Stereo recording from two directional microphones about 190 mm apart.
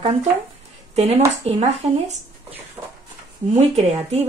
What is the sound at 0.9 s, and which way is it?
Speech, 35° right (ahead or behind).